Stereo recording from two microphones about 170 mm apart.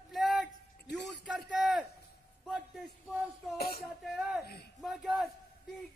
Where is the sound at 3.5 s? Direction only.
65° left (ahead or behind).